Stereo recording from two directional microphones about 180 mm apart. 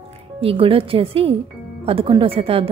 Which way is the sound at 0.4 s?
30° right (ahead or behind).